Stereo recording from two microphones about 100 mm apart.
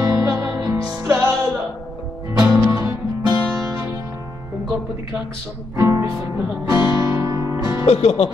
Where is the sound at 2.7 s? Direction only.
35° right (ahead or behind).